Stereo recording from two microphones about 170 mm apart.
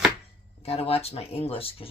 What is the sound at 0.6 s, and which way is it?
Chopping, 35° left (ahead or behind).